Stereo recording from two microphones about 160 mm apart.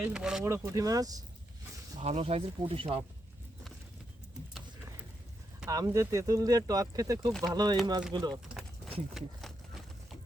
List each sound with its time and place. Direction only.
0.0 s speech: 5° right (ahead or behind)
0.4 s speech: 20° right (ahead or behind)
2.0 s speech: 45° right (ahead or behind)
5.6 s speech: 20° right (ahead or behind)
8.4 s a sound: 5° right (ahead or behind)